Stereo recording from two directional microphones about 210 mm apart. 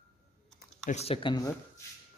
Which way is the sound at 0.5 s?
35° left (ahead or behind).